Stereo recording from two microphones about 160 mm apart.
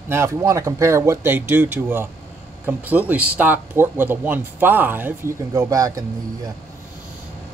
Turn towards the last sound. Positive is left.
turn(degrees=-20)  # may be behind; listen again after turning